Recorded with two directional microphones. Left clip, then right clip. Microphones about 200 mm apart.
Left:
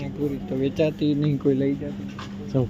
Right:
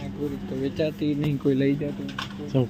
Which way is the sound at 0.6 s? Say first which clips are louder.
Left 3 dB; 35° left (ahead or behind).